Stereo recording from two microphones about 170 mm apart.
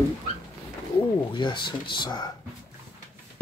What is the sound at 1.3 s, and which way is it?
Speech, 25° left (ahead or behind).